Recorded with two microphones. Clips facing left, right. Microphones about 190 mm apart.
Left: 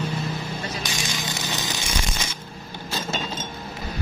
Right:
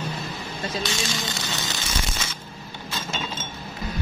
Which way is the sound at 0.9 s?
20° left (ahead or behind).